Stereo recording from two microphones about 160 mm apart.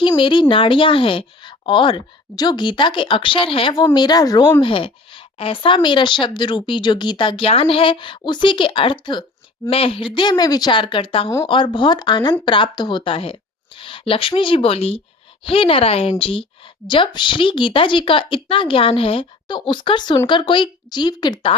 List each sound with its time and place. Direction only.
0.2 s a woman's voice: 30° left (ahead or behind)